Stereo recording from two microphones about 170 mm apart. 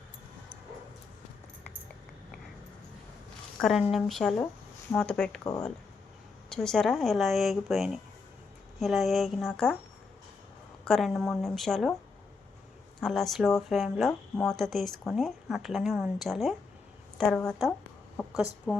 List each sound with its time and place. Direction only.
3.6 s speech: 5° right (ahead or behind)
5.4 s speech: 20° left (ahead or behind)
6.5 s speech: 5° left (ahead or behind)
10.8 s speech: centre (ahead or behind)
13.0 s speech: centre (ahead or behind)